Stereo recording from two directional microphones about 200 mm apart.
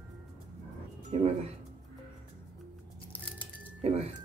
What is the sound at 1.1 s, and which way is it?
Speech, 30° right (ahead or behind).